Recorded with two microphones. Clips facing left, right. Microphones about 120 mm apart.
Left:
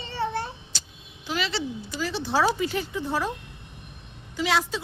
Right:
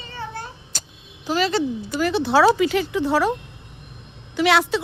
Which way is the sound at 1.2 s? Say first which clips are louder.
Right 8 dB; 40° right (ahead or behind).